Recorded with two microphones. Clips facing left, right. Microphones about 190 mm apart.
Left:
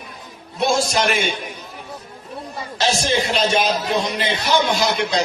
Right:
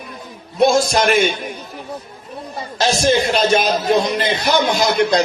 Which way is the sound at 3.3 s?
50° right (ahead or behind).